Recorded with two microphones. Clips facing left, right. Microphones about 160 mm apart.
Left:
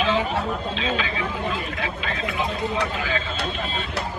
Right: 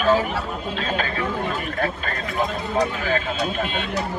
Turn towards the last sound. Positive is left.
turn(degrees=-45)  # may be behind; listen again after turning